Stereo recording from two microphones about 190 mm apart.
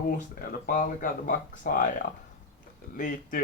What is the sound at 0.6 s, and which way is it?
Speech, 45° left (ahead or behind).